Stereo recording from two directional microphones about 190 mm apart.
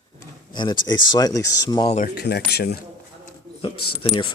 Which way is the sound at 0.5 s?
25° left (ahead or behind).